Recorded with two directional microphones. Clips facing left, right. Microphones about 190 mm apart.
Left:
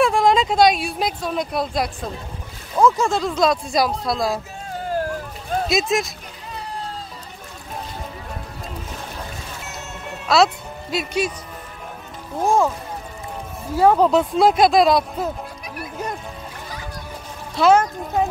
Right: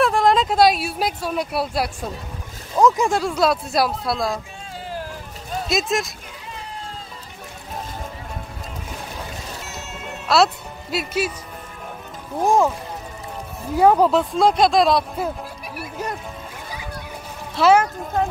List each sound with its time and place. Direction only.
0.0 s speech: centre (ahead or behind)
4.7 s a sound: 50° left (ahead or behind)
5.7 s speech: centre (ahead or behind)
10.2 s speech: centre (ahead or behind)
12.4 s speech: 15° right (ahead or behind)
13.7 s speech: 10° right (ahead or behind)
17.6 s speech: 5° right (ahead or behind)